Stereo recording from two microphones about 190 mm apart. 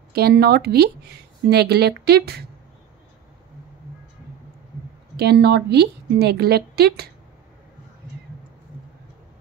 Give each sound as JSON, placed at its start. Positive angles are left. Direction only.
{"t": 0.1, "sound": "speech", "side_deg": -55}
{"t": 5.1, "sound": "speech", "side_deg": -60}